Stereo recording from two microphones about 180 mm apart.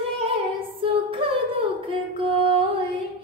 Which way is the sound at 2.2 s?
30° right (ahead or behind).